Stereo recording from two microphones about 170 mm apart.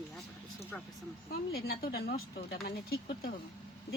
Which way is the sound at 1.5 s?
65° left (ahead or behind).